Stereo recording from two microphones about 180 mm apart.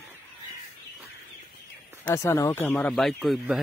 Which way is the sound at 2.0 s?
15° left (ahead or behind).